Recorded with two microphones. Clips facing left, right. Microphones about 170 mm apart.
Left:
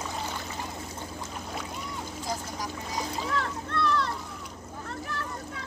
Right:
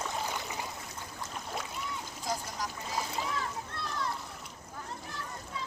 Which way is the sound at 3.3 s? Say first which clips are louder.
Left 7 dB; 70° left (ahead or behind).